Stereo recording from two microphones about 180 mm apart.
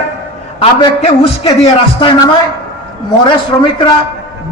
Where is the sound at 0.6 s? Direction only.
35° left (ahead or behind).